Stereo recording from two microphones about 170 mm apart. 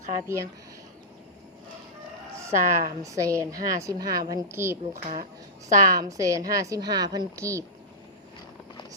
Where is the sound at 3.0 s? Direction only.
20° right (ahead or behind).